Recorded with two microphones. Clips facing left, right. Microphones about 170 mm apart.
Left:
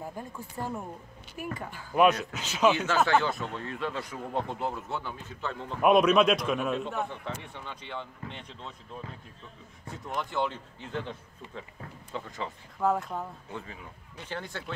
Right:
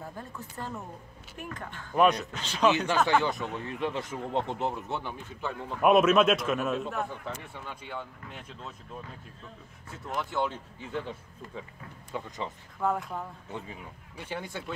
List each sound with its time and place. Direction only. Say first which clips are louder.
0.0 s speech: left 2 dB; 15° left (ahead or behind)
3.1 s a man's voice: even; 15° right (ahead or behind)
5.8 s a man's voice: even; centre (ahead or behind)
9.9 s a man's voice: even; centre (ahead or behind); by 12.4 s 20° right (ahead or behind)
12.8 s a man's voice: left 2 dB; centre (ahead or behind)
13.5 s a man's voice: right 1 dB; 15° right (ahead or behind)